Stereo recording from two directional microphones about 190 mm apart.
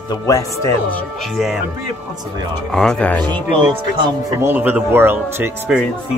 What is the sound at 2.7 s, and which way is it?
Speech, 5° left (ahead or behind).